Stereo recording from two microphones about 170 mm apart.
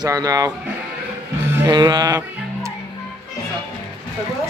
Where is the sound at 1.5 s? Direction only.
20° right (ahead or behind).